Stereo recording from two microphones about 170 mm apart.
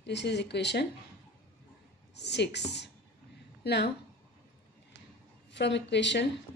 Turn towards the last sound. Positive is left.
turn(degrees=90)